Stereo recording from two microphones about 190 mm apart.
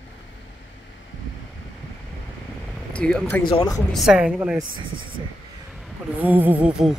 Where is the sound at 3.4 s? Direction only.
20° left (ahead or behind).